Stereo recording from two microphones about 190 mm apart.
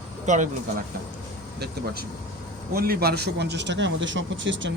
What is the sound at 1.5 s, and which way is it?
A man's voice, 60° right (ahead or behind).